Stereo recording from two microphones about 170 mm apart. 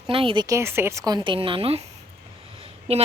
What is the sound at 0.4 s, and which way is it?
A woman's voice, 15° right (ahead or behind).